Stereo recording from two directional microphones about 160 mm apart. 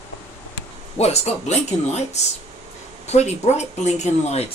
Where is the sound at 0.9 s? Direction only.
40° left (ahead or behind).